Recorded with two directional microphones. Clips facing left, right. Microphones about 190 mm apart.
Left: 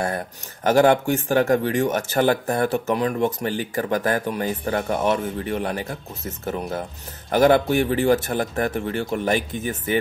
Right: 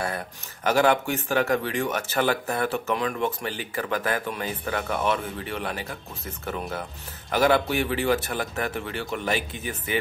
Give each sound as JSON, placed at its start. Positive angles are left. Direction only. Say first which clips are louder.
{"t": 0.7, "sound": "speech", "louder": "left 5 dB", "side_deg": 45}